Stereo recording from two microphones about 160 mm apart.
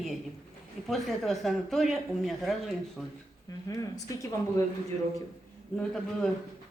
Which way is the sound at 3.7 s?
20° left (ahead or behind).